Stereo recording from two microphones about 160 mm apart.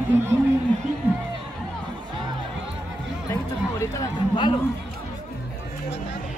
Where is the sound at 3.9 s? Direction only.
20° left (ahead or behind).